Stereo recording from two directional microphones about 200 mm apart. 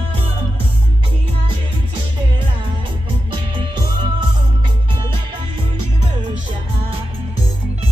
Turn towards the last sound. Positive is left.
turn(degrees=-20)  # may be behind; listen again after turning